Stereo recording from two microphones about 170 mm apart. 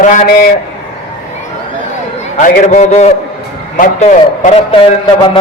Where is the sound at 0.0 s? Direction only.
50° left (ahead or behind).